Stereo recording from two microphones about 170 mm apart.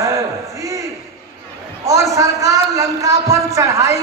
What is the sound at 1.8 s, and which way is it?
A man's voice, 20° right (ahead or behind).